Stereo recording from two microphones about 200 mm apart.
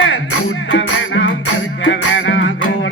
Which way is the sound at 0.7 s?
65° left (ahead or behind).